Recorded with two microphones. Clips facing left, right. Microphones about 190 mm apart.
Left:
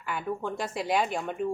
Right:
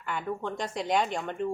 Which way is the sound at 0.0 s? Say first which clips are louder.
Left 1 dB; 5° left (ahead or behind).